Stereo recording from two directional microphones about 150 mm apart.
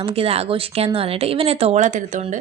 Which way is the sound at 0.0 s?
40° right (ahead or behind).